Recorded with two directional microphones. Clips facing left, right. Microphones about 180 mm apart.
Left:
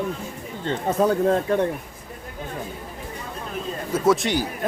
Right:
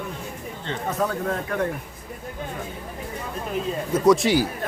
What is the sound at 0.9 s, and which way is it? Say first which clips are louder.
Speech: left 6 dB; 30° left (ahead or behind).